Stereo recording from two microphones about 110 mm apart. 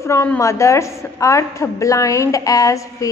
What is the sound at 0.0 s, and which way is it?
A woman's voice, 25° left (ahead or behind).